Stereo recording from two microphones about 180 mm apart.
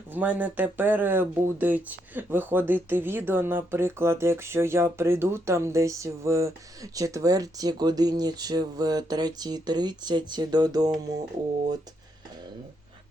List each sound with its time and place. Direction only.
0.1 s speech: 10° right (ahead or behind)